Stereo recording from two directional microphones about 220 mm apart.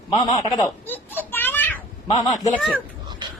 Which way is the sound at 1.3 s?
10° left (ahead or behind).